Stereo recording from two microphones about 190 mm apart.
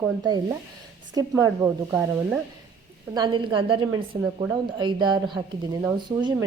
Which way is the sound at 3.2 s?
25° right (ahead or behind).